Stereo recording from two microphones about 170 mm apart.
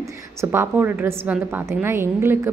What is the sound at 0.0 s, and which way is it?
A woman's voice, 15° right (ahead or behind).